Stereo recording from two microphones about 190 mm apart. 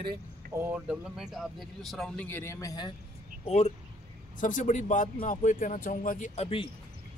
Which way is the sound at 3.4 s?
35° left (ahead or behind).